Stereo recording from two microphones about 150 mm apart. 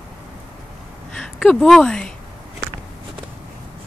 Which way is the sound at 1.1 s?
5° left (ahead or behind).